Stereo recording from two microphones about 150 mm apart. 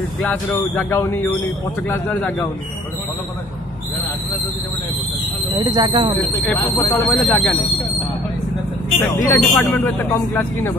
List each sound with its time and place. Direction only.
0.7 s speech: 15° left (ahead or behind)
5.6 s speech: 30° right (ahead or behind)
6.4 s speech: 15° left (ahead or behind)
7.1 s speech: 5° left (ahead or behind)
9.1 s speech: 15° left (ahead or behind)
9.7 s speech: 5° left (ahead or behind)